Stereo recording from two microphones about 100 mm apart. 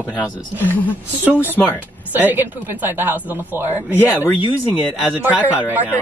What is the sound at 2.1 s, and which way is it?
Speech, 20° right (ahead or behind).